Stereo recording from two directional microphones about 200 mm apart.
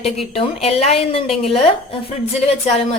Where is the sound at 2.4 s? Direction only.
30° left (ahead or behind).